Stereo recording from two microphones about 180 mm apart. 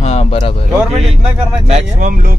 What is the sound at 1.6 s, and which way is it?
Speech, 35° right (ahead or behind).